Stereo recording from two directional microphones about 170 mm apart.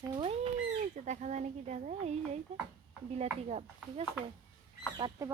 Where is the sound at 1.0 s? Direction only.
45° right (ahead or behind).